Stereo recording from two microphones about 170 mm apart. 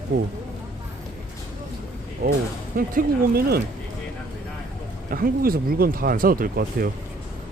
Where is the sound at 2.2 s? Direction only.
70° right (ahead or behind).